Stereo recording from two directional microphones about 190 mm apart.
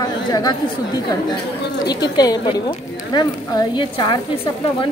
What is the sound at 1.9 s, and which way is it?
A woman's voice, 20° left (ahead or behind).